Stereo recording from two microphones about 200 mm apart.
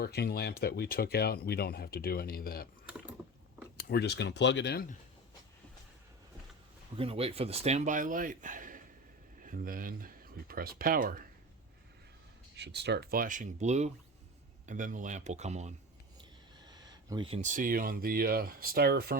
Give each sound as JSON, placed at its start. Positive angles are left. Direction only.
{"t": 0.0, "sound": "speech", "side_deg": 55}
{"t": 3.8, "sound": "speech", "side_deg": 55}
{"t": 6.9, "sound": "speech", "side_deg": -30}
{"t": 12.5, "sound": "speech", "side_deg": -60}
{"t": 16.6, "sound": "speech", "side_deg": -20}